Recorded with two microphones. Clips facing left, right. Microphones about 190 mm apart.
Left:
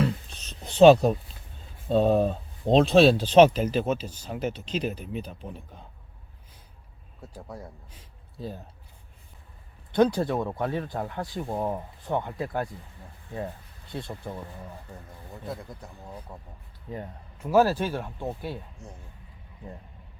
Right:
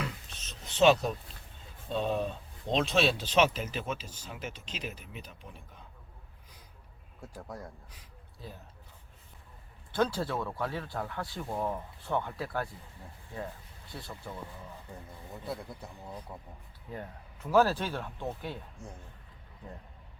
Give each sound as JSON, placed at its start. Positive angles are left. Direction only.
{"t": 0.0, "sound": "a sound", "side_deg": 35}
{"t": 1.9, "sound": "speech", "side_deg": 40}
{"t": 7.3, "sound": "speech", "side_deg": 5}
{"t": 9.9, "sound": "speech", "side_deg": 20}
{"t": 13.9, "sound": "speech", "side_deg": 25}
{"t": 16.0, "sound": "speech", "side_deg": 10}